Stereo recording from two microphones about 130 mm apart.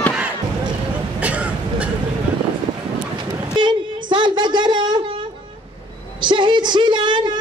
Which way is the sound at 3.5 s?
35° right (ahead or behind).